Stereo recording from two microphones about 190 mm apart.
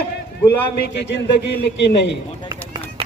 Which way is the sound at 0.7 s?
60° left (ahead or behind).